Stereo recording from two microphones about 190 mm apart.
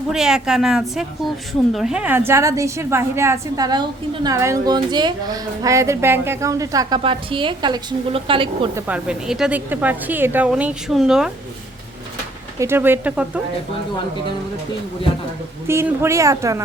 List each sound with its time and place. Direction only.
0.1 s a woman's voice: 5° right (ahead or behind); by 8.7 s 30° right (ahead or behind)
8.7 s a woman's voice: 5° right (ahead or behind)
12.5 s a woman's voice: 15° right (ahead or behind)
15.6 s a woman's voice: 15° right (ahead or behind)